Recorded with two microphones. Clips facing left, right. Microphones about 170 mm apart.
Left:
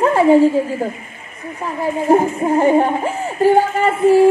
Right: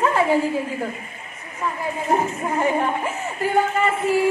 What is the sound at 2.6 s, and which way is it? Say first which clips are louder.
A woman's voice: left 7 dB; 30° left (ahead or behind).